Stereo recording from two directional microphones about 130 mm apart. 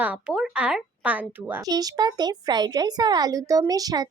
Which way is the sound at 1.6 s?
30° right (ahead or behind).